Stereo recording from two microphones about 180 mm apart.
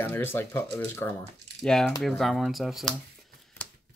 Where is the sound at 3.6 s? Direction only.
10° left (ahead or behind).